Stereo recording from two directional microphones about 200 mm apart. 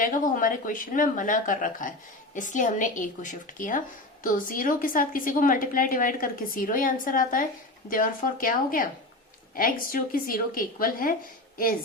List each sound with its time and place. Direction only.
0.0 s a woman's voice: 40° left (ahead or behind)